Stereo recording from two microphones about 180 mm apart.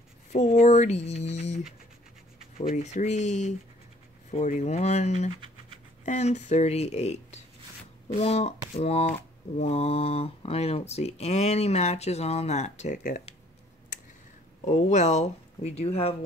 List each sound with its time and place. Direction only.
0.3 s speech: 40° left (ahead or behind)
14.6 s speech: 40° left (ahead or behind)